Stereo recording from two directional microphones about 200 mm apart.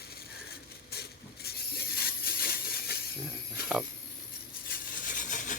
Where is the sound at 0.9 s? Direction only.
50° left (ahead or behind).